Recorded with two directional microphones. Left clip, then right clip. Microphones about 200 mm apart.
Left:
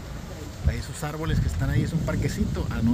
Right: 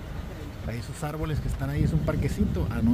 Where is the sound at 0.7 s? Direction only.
5° right (ahead or behind).